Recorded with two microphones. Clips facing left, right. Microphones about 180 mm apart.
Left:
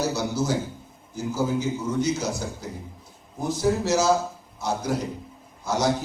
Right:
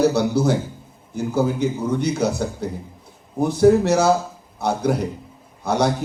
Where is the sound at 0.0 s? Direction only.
60° right (ahead or behind).